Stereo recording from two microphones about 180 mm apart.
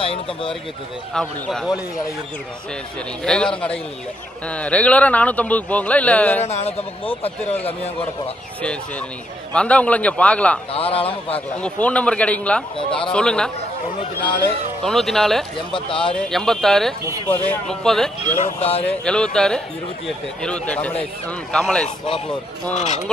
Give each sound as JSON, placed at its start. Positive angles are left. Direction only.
{"t": 0.0, "sound": "a man's voice", "side_deg": 30}
{"t": 1.1, "sound": "speech", "side_deg": 0}
{"t": 3.3, "sound": "a man's voice", "side_deg": 5}
{"t": 6.4, "sound": "a man's voice", "side_deg": 35}
{"t": 9.5, "sound": "a man's voice", "side_deg": 5}
{"t": 10.7, "sound": "a man's voice", "side_deg": 30}
{"t": 11.5, "sound": "a man's voice", "side_deg": 5}
{"t": 14.9, "sound": "speech", "side_deg": 0}
{"t": 15.9, "sound": "a man's voice", "side_deg": 30}
{"t": 16.2, "sound": "speech", "side_deg": 5}
{"t": 18.3, "sound": "a man's voice", "side_deg": 35}
{"t": 18.9, "sound": "a man's voice", "side_deg": 5}
{"t": 21.8, "sound": "a man's voice", "side_deg": 30}